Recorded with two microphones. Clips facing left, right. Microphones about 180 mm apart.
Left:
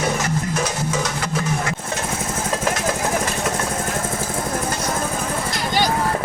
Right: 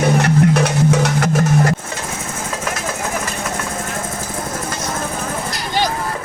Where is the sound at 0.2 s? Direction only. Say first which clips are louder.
Right 8 dB; 60° right (ahead or behind).